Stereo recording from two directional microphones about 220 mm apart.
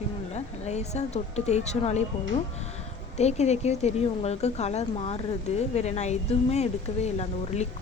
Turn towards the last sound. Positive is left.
turn(degrees=30)  # may be behind; listen again after turning